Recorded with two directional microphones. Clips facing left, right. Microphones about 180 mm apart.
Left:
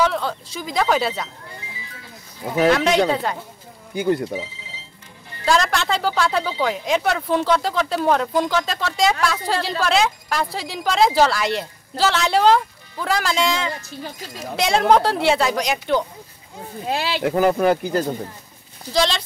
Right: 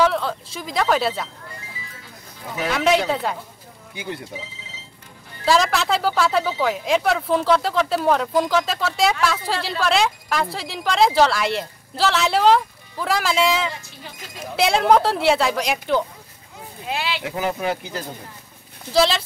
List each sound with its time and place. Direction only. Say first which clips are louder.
0.0 s a woman's voice: right 1 dB; centre (ahead or behind)
2.7 s a woman's voice: right 2 dB; 5° right (ahead or behind)
3.9 s speech: left 11 dB; 50° left (ahead or behind)
5.4 s a woman's voice: right 1 dB; centre (ahead or behind)
16.8 s speech: left 4 dB; 40° left (ahead or behind)
17.3 s speech: left 9 dB; 50° left (ahead or behind)
18.9 s a woman's voice: right 2 dB; 5° right (ahead or behind)